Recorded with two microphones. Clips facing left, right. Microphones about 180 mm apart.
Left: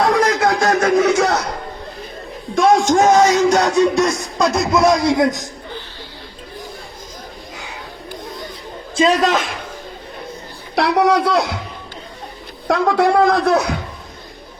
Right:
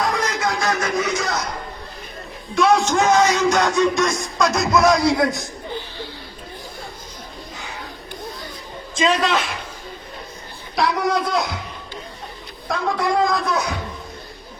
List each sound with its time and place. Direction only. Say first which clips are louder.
0.0 s a sound: left 7 dB; 65° left (ahead or behind)
0.8 s music: left 9 dB; 60° left (ahead or behind)
2.6 s speech: left 4 dB; 45° left (ahead or behind); by 5.2 s 25° left (ahead or behind)
9.0 s a man's voice: left 4 dB; 40° left (ahead or behind)
10.8 s a man's voice: left 5 dB; 70° left (ahead or behind)
12.6 s a man's voice: left 7 dB; 70° left (ahead or behind)